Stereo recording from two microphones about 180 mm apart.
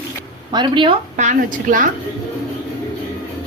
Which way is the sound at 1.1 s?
45° right (ahead or behind).